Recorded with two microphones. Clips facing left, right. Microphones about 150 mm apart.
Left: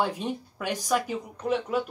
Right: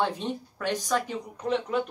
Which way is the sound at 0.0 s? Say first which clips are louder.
Even; 10° left (ahead or behind).